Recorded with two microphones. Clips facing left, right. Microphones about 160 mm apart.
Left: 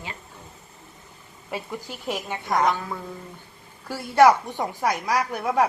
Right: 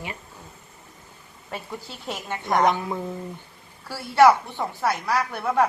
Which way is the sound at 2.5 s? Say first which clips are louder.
Right 2 dB; 20° right (ahead or behind).